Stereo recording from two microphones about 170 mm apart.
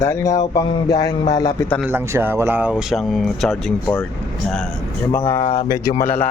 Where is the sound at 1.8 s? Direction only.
10° right (ahead or behind).